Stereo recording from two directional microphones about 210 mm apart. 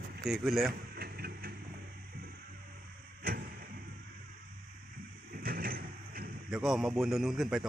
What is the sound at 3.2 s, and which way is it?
Vehicle, 45° right (ahead or behind).